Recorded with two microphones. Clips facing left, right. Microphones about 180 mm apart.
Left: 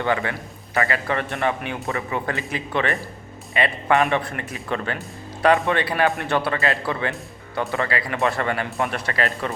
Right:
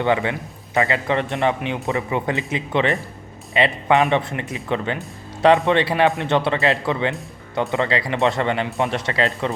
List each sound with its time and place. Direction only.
0.0 s a man's voice: 20° right (ahead or behind)